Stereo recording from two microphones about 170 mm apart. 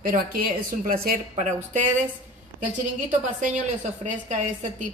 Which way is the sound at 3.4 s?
45° right (ahead or behind).